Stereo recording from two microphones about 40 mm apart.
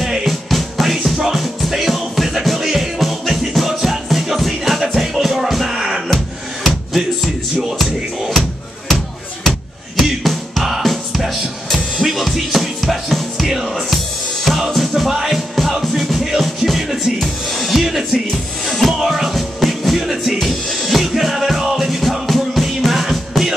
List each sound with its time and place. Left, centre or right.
0.0 s music: centre
8.3 s music: centre
18.7 s music: centre
20.0 s music: centre
20.3 s music: centre